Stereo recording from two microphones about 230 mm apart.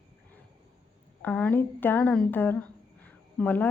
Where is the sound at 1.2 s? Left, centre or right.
Centre.